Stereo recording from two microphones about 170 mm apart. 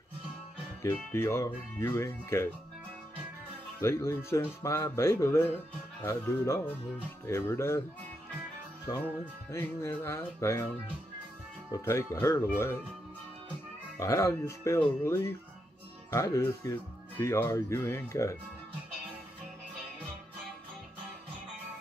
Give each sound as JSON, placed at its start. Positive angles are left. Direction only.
{"t": 0.8, "sound": "speech", "side_deg": 15}
{"t": 3.8, "sound": "speech", "side_deg": 15}
{"t": 8.9, "sound": "speech", "side_deg": 15}
{"t": 11.7, "sound": "speech", "side_deg": 15}
{"t": 13.9, "sound": "speech", "side_deg": 15}